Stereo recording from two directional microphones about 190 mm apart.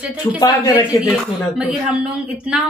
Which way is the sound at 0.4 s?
20° left (ahead or behind).